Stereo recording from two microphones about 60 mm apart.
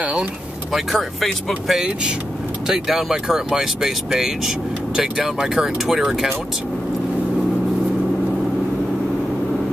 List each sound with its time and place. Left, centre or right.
0.0 s speech: right
0.7 s speech: centre